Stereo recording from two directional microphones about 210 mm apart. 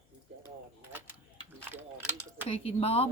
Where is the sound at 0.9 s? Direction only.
10° right (ahead or behind).